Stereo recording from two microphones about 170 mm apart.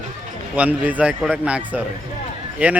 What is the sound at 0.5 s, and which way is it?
A man's voice, 10° right (ahead or behind).